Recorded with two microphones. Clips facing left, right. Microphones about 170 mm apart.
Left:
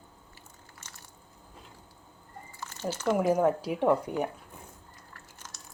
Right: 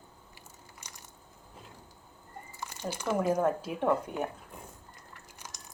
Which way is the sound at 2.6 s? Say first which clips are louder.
Left 4 dB; 15° right (ahead or behind).